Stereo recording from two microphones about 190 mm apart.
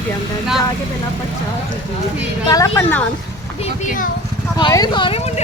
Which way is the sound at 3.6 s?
40° left (ahead or behind).